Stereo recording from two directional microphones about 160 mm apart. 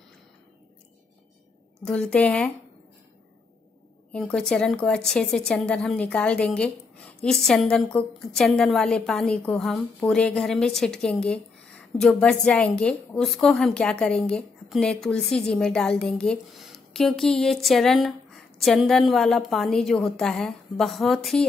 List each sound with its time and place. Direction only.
1.9 s speech: 5° left (ahead or behind)
4.1 s a woman's voice: 5° left (ahead or behind)